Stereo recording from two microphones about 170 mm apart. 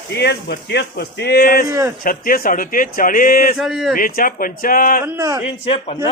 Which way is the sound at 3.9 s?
55° left (ahead or behind).